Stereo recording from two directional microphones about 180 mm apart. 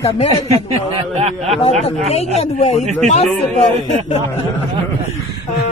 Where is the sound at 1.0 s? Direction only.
35° right (ahead or behind).